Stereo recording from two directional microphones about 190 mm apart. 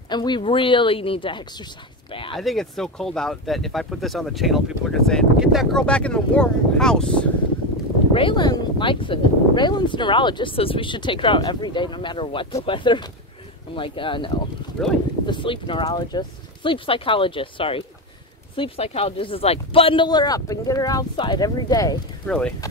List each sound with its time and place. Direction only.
0.1 s speech: 25° left (ahead or behind)
2.3 s speech: centre (ahead or behind)
8.1 s speech: 25° left (ahead or behind)
14.8 s speech: 5° left (ahead or behind)
15.2 s speech: 25° left (ahead or behind)
22.2 s speech: 5° left (ahead or behind)